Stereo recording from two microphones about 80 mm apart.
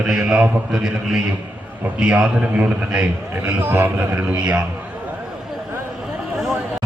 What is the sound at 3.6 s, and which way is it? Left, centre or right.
Speech, right.